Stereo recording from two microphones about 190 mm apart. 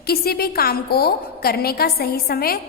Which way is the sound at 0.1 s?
55° left (ahead or behind).